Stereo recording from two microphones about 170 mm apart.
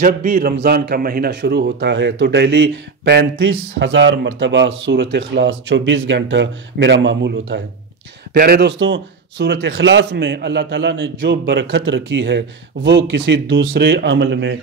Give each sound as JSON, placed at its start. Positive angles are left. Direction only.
{"t": 0.0, "sound": "a man's voice", "side_deg": -50}
{"t": 8.3, "sound": "a man's voice", "side_deg": -65}